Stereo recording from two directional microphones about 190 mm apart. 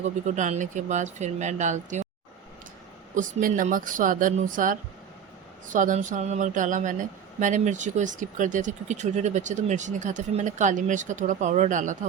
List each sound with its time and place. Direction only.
0.3 s speech: 40° right (ahead or behind)
3.2 s speech: 45° right (ahead or behind)